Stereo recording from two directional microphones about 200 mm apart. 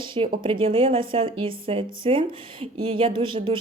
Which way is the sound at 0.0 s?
25° right (ahead or behind).